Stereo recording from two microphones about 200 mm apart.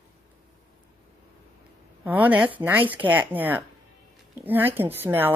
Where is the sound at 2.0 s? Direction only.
10° right (ahead or behind).